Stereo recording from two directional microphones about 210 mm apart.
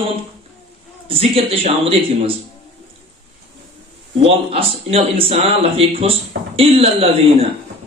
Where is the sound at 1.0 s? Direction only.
25° right (ahead or behind).